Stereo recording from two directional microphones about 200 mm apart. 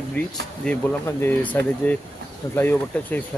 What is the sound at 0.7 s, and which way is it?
Speech, 10° left (ahead or behind).